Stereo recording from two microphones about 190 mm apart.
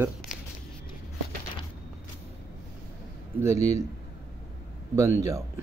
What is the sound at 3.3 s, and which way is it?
Speech, 15° right (ahead or behind).